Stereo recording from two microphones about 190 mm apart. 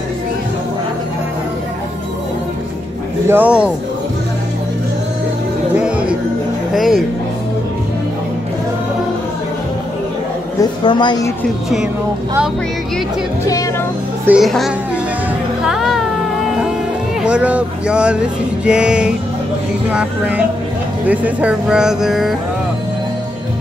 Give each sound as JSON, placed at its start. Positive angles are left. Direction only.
{"t": 3.3, "sound": "music", "side_deg": -10}
{"t": 5.8, "sound": "music", "side_deg": -5}
{"t": 6.7, "sound": "speech", "side_deg": 0}
{"t": 10.6, "sound": "a woman's voice", "side_deg": 25}
{"t": 14.2, "sound": "speech", "side_deg": -5}
{"t": 15.6, "sound": "music", "side_deg": 0}
{"t": 17.2, "sound": "speech", "side_deg": -5}
{"t": 19.9, "sound": "music", "side_deg": -10}
{"t": 21.1, "sound": "speech", "side_deg": -5}